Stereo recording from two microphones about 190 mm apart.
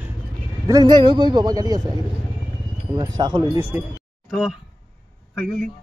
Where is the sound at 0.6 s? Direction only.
20° right (ahead or behind).